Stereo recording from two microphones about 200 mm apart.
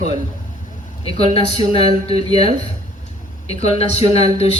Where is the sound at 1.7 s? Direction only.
30° left (ahead or behind).